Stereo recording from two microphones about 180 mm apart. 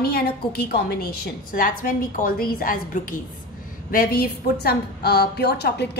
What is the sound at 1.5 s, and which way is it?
A woman's voice, 50° left (ahead or behind).